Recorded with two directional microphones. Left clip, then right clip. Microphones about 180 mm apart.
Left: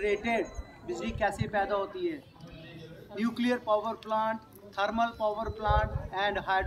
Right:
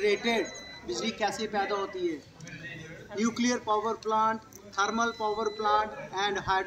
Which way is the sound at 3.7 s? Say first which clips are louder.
Right 2 dB; 15° left (ahead or behind).